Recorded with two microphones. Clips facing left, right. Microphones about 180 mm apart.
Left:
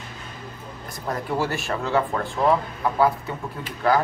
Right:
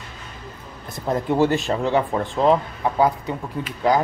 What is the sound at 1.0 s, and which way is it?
Speech, 20° right (ahead or behind).